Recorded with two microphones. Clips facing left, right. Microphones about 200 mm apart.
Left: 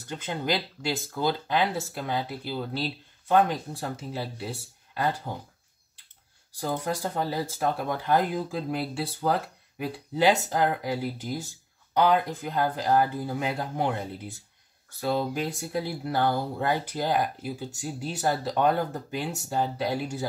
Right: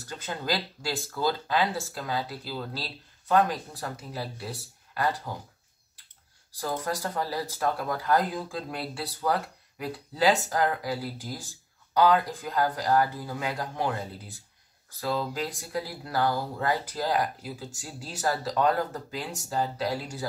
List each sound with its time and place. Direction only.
0.1 s speech: 20° left (ahead or behind)
6.6 s speech: 25° left (ahead or behind)